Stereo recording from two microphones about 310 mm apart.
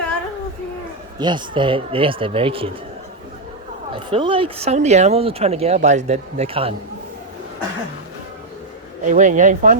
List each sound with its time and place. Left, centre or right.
1.2 s speech: centre
3.9 s speech: centre
9.0 s speech: right